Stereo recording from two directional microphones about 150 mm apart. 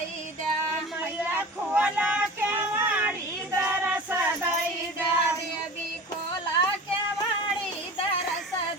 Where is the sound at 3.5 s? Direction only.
10° right (ahead or behind).